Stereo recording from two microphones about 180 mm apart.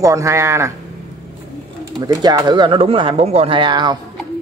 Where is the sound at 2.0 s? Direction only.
20° right (ahead or behind).